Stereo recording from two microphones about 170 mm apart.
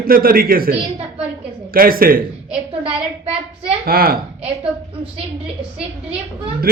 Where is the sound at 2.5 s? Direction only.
35° right (ahead or behind).